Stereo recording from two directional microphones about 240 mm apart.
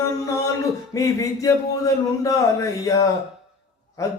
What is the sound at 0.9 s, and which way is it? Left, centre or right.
Speech, centre.